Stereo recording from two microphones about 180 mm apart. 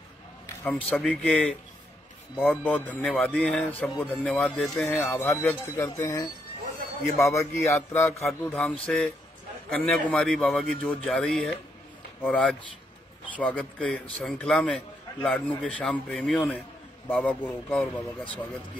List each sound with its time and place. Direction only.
0.7 s a man's voice: 10° left (ahead or behind)
8.1 s a man's voice: centre (ahead or behind)